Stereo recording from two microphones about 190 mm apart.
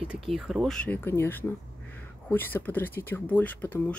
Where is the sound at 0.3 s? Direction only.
Centre (ahead or behind).